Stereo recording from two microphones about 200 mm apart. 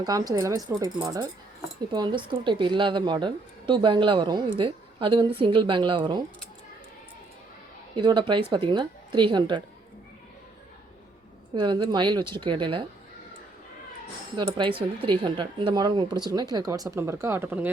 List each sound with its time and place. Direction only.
0.0 s a woman's voice: 20° right (ahead or behind)
7.9 s speech: 25° right (ahead or behind)
11.5 s speech: 25° right (ahead or behind)
14.3 s speech: 25° right (ahead or behind)